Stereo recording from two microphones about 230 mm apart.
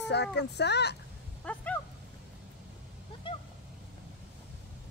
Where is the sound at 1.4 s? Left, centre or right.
Centre.